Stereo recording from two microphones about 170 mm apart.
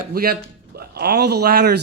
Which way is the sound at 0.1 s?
60° right (ahead or behind).